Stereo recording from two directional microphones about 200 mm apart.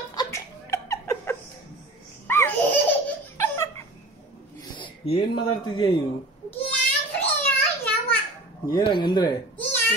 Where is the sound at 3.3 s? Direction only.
15° left (ahead or behind).